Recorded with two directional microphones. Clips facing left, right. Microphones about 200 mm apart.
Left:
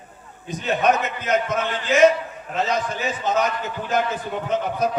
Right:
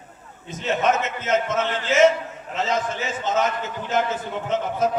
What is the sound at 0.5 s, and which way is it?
A man's voice, 25° right (ahead or behind).